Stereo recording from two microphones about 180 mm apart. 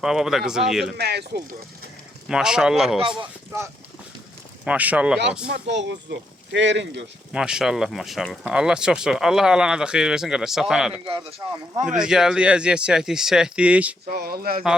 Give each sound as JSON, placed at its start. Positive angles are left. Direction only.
{"t": 0.0, "sound": "speech", "side_deg": 0}
{"t": 0.9, "sound": "speech", "side_deg": -65}
{"t": 2.2, "sound": "speech", "side_deg": -5}
{"t": 4.6, "sound": "speech", "side_deg": -10}
{"t": 5.6, "sound": "speech", "side_deg": -75}
{"t": 7.3, "sound": "speech", "side_deg": -5}
{"t": 11.0, "sound": "speech", "side_deg": -30}
{"t": 11.9, "sound": "speech", "side_deg": -5}
{"t": 14.1, "sound": "speech", "side_deg": -55}